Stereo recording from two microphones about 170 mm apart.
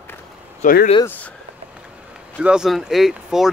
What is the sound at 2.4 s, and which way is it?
Speech, 5° right (ahead or behind).